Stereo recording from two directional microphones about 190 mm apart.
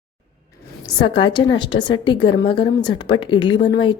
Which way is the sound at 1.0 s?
25° left (ahead or behind).